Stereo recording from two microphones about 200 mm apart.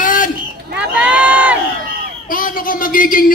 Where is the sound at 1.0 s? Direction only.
5° right (ahead or behind).